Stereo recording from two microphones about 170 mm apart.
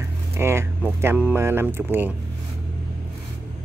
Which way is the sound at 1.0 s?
10° right (ahead or behind).